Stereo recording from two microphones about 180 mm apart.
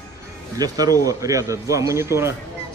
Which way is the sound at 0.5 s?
20° right (ahead or behind).